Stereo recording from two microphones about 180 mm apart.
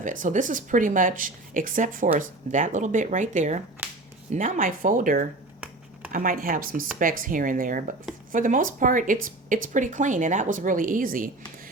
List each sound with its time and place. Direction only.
0.0 s a woman's voice: 45° right (ahead or behind)
3.8 s finger snapping: 10° right (ahead or behind)
4.3 s a woman's voice: 45° right (ahead or behind)